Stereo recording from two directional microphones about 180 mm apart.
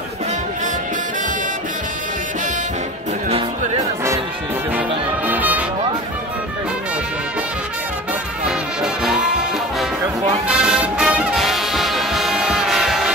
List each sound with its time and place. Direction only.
3.3 s music: 30° right (ahead or behind)
4.7 s music: 10° right (ahead or behind)
8.5 s music: centre (ahead or behind)